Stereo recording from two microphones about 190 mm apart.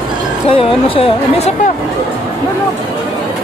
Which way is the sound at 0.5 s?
30° left (ahead or behind).